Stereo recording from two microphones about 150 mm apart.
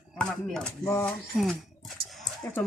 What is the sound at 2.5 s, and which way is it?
Speech, 15° left (ahead or behind).